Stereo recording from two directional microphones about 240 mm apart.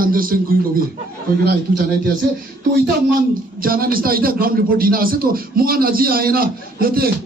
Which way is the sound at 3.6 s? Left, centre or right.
Right.